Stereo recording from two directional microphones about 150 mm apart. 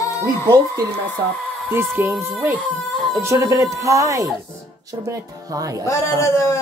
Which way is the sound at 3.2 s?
20° right (ahead or behind).